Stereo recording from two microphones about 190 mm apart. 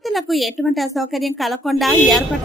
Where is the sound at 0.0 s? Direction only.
Centre (ahead or behind).